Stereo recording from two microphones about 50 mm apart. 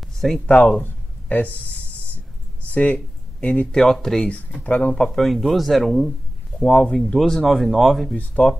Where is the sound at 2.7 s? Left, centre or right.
Left.